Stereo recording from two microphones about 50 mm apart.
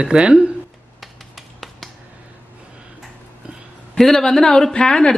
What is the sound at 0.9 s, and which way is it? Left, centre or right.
Finger snapping, centre.